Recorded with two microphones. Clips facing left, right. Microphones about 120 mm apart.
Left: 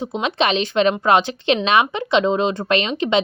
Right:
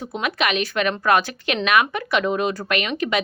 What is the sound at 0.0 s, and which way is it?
A woman's voice, 20° left (ahead or behind).